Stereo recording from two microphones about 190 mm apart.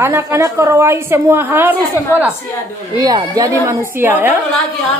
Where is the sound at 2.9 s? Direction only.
20° right (ahead or behind).